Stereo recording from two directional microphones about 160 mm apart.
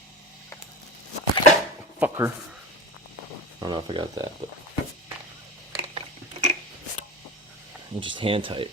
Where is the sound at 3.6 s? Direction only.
30° right (ahead or behind).